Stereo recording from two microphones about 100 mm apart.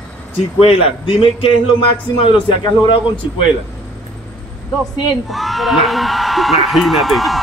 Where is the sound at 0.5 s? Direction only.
70° left (ahead or behind).